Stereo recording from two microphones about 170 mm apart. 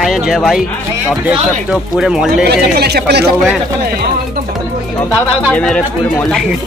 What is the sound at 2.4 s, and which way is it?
Speech, 70° right (ahead or behind).